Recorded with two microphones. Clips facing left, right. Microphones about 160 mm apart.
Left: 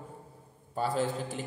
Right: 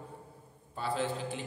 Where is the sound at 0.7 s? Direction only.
45° left (ahead or behind).